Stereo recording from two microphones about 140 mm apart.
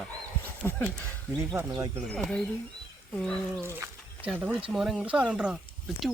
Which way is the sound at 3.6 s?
15° right (ahead or behind).